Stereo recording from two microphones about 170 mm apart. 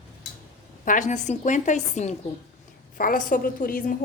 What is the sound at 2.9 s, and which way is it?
A woman's voice, 55° left (ahead or behind).